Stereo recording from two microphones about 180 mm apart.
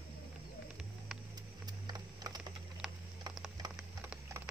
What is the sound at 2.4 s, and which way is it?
Typing, 5° right (ahead or behind).